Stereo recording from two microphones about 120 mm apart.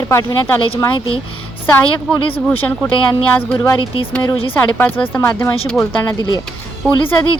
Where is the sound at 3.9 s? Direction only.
45° left (ahead or behind).